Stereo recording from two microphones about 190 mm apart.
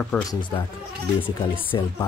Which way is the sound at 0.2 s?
20° left (ahead or behind).